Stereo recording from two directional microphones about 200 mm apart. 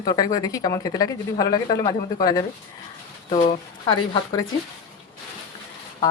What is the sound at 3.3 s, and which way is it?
Speech, 40° left (ahead or behind).